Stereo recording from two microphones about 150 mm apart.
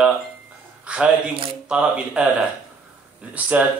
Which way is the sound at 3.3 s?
10° right (ahead or behind).